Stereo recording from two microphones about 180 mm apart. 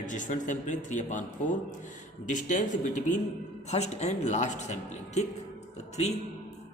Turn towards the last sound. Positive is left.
turn(degrees=35)  # may be behind; listen again after turning